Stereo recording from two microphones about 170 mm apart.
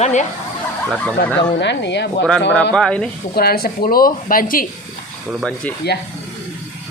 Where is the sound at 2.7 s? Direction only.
5° left (ahead or behind).